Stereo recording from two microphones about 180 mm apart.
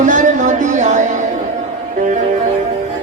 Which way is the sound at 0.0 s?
45° right (ahead or behind).